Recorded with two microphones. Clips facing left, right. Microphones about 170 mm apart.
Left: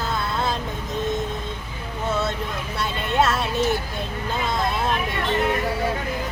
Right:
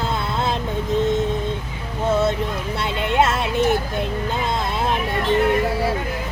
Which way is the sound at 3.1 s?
20° right (ahead or behind).